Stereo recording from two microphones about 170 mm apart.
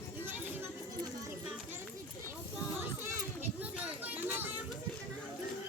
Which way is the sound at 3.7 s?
10° right (ahead or behind).